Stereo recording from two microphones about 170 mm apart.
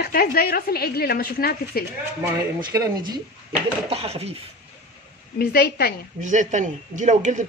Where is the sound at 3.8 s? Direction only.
35° right (ahead or behind).